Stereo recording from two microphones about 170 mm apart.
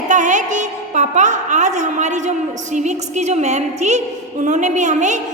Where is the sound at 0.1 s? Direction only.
45° right (ahead or behind).